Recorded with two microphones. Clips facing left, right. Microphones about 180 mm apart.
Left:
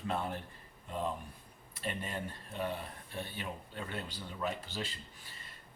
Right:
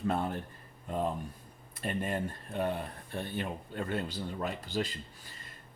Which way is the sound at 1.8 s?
50° right (ahead or behind).